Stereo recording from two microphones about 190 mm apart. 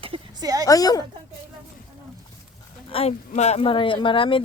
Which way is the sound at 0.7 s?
20° left (ahead or behind).